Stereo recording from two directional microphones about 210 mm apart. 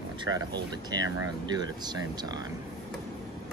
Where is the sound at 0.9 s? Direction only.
20° right (ahead or behind).